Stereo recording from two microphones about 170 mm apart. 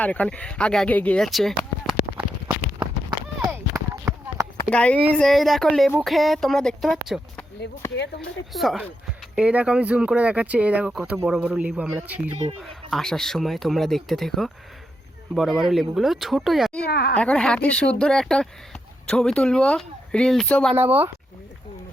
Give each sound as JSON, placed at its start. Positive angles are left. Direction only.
{"t": 0.0, "sound": "speech", "side_deg": 10}
{"t": 3.5, "sound": "a sound", "side_deg": -10}
{"t": 4.7, "sound": "speech", "side_deg": 5}
{"t": 7.8, "sound": "speech", "side_deg": 15}
{"t": 8.2, "sound": "speech", "side_deg": 0}
{"t": 12.9, "sound": "speech", "side_deg": 5}
{"t": 16.8, "sound": "speech", "side_deg": 70}
{"t": 17.2, "sound": "speech", "side_deg": 5}
{"t": 20.7, "sound": "speech", "side_deg": -10}